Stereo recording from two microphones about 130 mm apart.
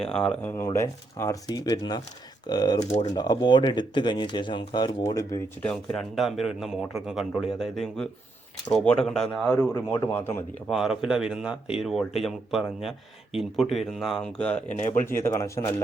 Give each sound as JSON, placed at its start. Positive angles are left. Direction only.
{"t": 0.0, "sound": "speech", "side_deg": 10}
{"t": 0.5, "sound": "speech", "side_deg": 20}
{"t": 2.7, "sound": "speech", "side_deg": 60}
{"t": 3.2, "sound": "speech", "side_deg": 35}
{"t": 5.6, "sound": "speech", "side_deg": 5}
{"t": 10.1, "sound": "speech", "side_deg": 15}
{"t": 10.7, "sound": "speech", "side_deg": 0}